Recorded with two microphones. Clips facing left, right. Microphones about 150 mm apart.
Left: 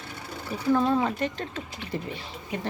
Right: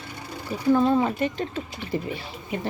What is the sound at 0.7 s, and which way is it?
Speech, 5° right (ahead or behind).